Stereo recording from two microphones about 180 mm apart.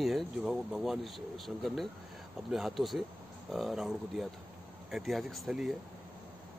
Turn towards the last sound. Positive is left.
turn(degrees=0)  # may be behind; listen again after turning